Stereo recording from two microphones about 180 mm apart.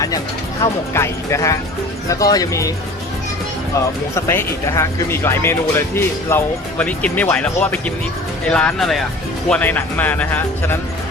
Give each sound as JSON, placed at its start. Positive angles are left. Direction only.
{"t": 0.6, "sound": "speech", "side_deg": 15}
{"t": 4.1, "sound": "speech", "side_deg": 15}